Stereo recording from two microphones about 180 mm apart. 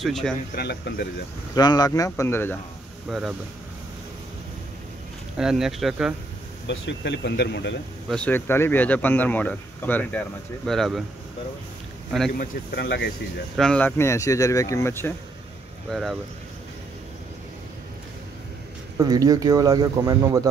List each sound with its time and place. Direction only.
0.0 s speech: centre (ahead or behind)
0.6 s speech: 65° left (ahead or behind)
1.5 s speech: 20° left (ahead or behind)
3.1 s speech: 5° right (ahead or behind)
5.4 s speech: centre (ahead or behind)
6.7 s speech: 80° left
8.1 s speech: 10° left (ahead or behind)
12.4 s speech: 60° left (ahead or behind)
13.6 s speech: 5° left (ahead or behind)
15.9 s speech: centre (ahead or behind)
18.9 s speech: 20° right (ahead or behind)